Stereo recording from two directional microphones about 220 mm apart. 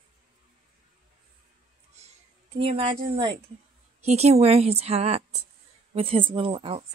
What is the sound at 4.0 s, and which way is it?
A woman's voice, 30° right (ahead or behind).